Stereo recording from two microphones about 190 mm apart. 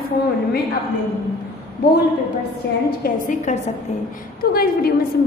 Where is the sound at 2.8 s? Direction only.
50° left (ahead or behind).